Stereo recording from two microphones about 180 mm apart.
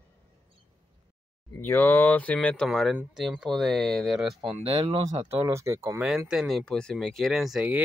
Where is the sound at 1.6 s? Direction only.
10° left (ahead or behind).